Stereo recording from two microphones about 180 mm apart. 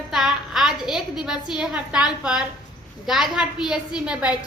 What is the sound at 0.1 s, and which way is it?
A woman's voice, centre (ahead or behind).